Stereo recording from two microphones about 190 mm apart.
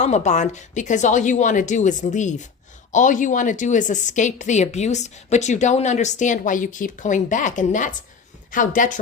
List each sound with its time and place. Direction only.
0.0 s a woman's voice: 40° left (ahead or behind)